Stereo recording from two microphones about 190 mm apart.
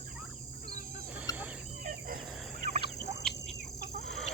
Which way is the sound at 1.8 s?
50° right (ahead or behind).